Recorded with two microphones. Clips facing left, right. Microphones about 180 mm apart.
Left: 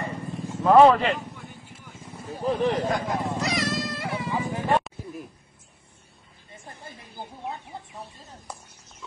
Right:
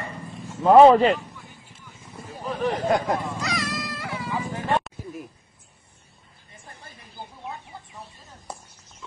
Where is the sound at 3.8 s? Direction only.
25° left (ahead or behind).